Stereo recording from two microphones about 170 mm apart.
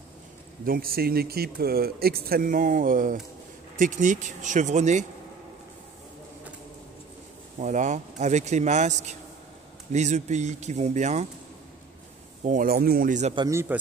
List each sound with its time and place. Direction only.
0.7 s a man's voice: 60° right (ahead or behind); by 5.0 s 45° right (ahead or behind)
7.5 s a man's voice: 45° right (ahead or behind)
12.4 s speech: 55° right (ahead or behind)
13.5 s a man's voice: 15° right (ahead or behind)